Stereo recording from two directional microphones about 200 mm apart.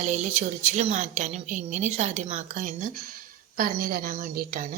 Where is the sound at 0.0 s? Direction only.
35° right (ahead or behind).